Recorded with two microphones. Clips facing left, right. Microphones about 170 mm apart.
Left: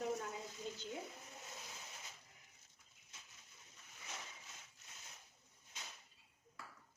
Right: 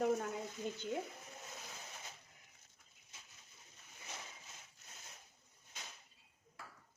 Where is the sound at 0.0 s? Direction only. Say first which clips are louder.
Right 6 dB; 60° right (ahead or behind).